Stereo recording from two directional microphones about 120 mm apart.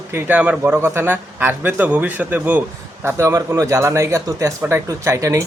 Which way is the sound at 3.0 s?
25° right (ahead or behind).